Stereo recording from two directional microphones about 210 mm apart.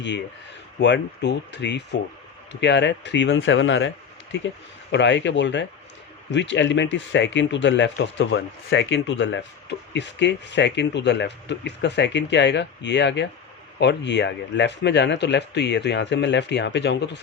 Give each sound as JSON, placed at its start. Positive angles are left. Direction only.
{"t": 0.8, "sound": "speech", "side_deg": 55}